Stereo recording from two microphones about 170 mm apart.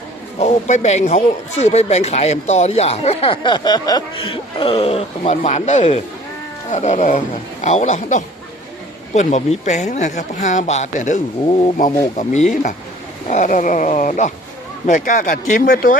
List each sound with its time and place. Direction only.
0.3 s speech: 40° left (ahead or behind)